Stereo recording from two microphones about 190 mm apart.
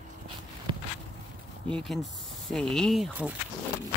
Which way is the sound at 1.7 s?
5° left (ahead or behind).